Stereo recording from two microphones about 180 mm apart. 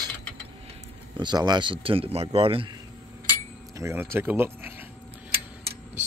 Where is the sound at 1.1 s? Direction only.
25° right (ahead or behind).